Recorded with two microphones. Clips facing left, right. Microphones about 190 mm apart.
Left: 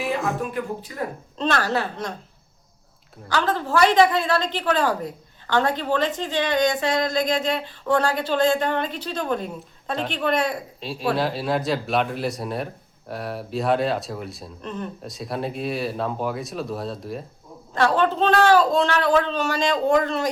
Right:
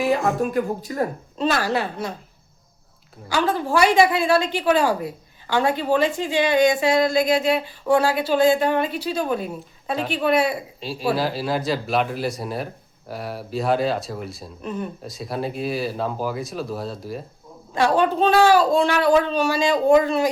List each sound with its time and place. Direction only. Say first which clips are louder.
0.2 s speech: right 5 dB; 40° right (ahead or behind)
1.4 s a woman's voice: right 1 dB; 10° right (ahead or behind)
3.2 s a woman's voice: right 2 dB; 10° right (ahead or behind)
17.7 s a woman's voice: right 1 dB; 10° right (ahead or behind)